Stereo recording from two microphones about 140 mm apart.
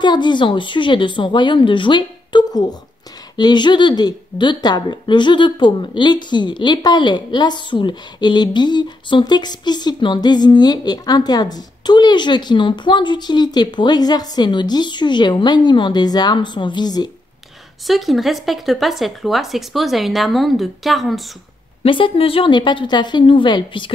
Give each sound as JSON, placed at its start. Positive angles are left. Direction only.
{"t": 0.0, "sound": "a woman's voice", "side_deg": 35}
{"t": 17.8, "sound": "speech", "side_deg": 0}
{"t": 21.8, "sound": "a woman's voice", "side_deg": 40}